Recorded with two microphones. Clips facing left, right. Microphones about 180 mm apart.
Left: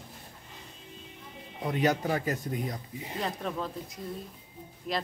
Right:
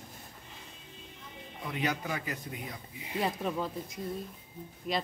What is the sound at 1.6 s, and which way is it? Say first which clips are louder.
A man's voice: left 7 dB; 40° left (ahead or behind).